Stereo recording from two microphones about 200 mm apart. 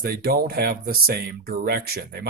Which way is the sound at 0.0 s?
50° right (ahead or behind).